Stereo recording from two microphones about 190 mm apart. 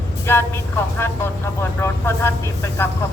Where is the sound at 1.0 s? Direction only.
15° left (ahead or behind).